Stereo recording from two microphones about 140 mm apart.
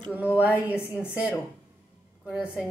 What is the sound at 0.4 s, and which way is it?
Speech, 10° right (ahead or behind).